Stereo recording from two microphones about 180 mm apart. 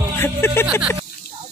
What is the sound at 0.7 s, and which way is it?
Speech, 5° right (ahead or behind).